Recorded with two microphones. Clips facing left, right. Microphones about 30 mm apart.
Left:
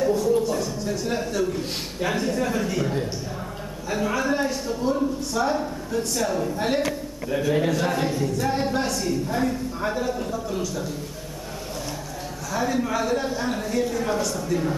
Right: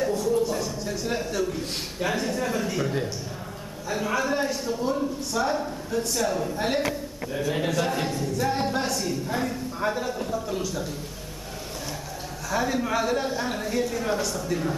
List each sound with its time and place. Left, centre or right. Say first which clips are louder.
0.1 s a man's voice: left 3 dB; centre
7.2 s a man's voice: left 5 dB; centre
7.5 s a man's voice: left 1 dB; centre
12.4 s a man's voice: left 1 dB; centre